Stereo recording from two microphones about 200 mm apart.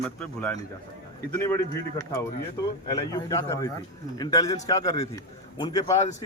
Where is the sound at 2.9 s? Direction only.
15° left (ahead or behind).